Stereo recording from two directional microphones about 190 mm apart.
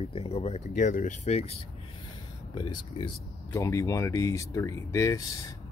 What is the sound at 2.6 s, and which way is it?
Speech, 25° left (ahead or behind).